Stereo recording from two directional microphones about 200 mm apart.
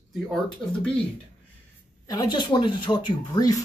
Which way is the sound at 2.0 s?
20° left (ahead or behind).